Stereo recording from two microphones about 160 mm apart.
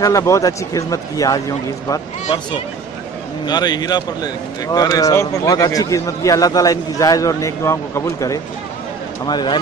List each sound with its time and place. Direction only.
0.0 s speech: 20° left (ahead or behind)